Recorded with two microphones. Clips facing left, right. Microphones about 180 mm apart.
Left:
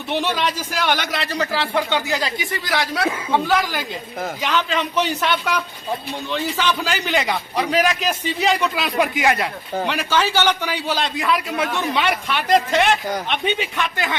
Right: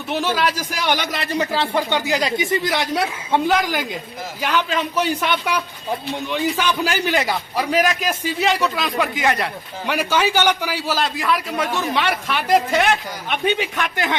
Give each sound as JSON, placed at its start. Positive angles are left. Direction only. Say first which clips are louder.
{"t": 0.1, "sound": "speech", "louder": "right 1 dB", "side_deg": -5}
{"t": 4.4, "sound": "a man's voice", "louder": "right 2 dB", "side_deg": -10}
{"t": 9.8, "sound": "a man's voice", "louder": "right 2 dB", "side_deg": -10}